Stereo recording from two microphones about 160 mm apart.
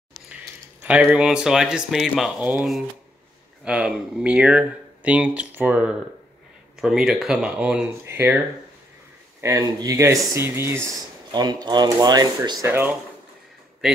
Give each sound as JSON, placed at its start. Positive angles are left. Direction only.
{"t": 1.1, "sound": "speech", "side_deg": -5}
{"t": 9.4, "sound": "speech", "side_deg": -20}
{"t": 12.6, "sound": "speech", "side_deg": -15}
{"t": 13.8, "sound": "speech", "side_deg": -5}